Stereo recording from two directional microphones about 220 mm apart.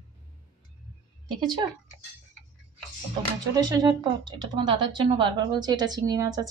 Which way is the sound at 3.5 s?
15° right (ahead or behind).